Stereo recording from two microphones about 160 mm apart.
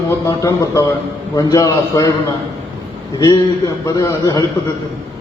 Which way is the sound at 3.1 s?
25° left (ahead or behind).